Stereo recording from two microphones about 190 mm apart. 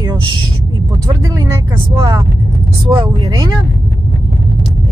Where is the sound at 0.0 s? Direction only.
20° right (ahead or behind).